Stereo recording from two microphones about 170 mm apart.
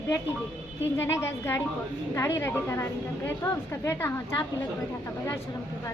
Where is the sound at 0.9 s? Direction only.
15° left (ahead or behind).